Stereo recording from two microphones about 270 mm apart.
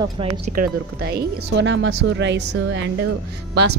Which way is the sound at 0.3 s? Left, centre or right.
Right.